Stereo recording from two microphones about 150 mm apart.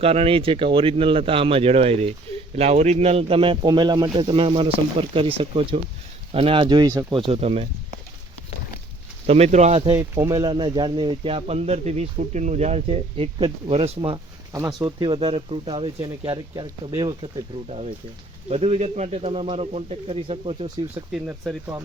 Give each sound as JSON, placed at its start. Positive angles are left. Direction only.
{"t": 0.0, "sound": "speech", "side_deg": -40}
{"t": 7.3, "sound": "speech", "side_deg": -40}
{"t": 9.2, "sound": "speech", "side_deg": -45}
{"t": 9.9, "sound": "speech", "side_deg": -20}
{"t": 14.5, "sound": "speech", "side_deg": -25}
{"t": 17.7, "sound": "speech", "side_deg": -45}
{"t": 21.1, "sound": "speech", "side_deg": -5}